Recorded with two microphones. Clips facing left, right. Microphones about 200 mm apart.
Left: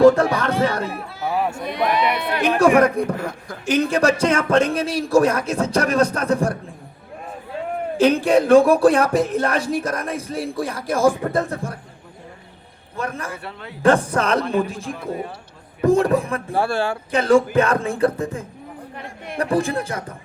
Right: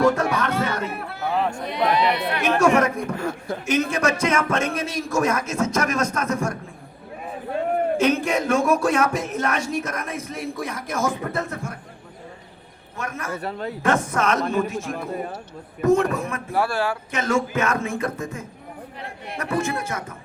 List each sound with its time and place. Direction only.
0.0 s a sound: 30° left (ahead or behind)
1.2 s speech: 10° left (ahead or behind)
1.6 s speech: 50° left (ahead or behind)
2.8 s speech: 35° left (ahead or behind)
3.2 s speech: 30° right (ahead or behind)
3.7 s speech: 30° left (ahead or behind)
7.9 s speech: 30° left (ahead or behind)
13.0 s speech: 30° left (ahead or behind)
13.4 s speech: 40° right (ahead or behind)
13.8 s speech: 30° left (ahead or behind)